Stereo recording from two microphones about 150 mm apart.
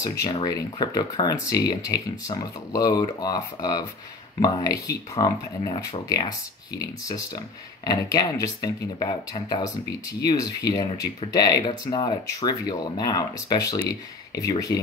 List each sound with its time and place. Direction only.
0.6 s speech: 25° left (ahead or behind)